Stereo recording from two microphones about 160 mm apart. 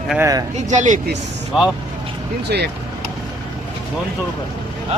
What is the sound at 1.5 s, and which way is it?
Speech, 5° right (ahead or behind).